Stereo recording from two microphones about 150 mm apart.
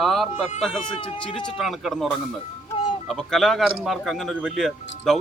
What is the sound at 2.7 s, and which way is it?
Music, 35° left (ahead or behind).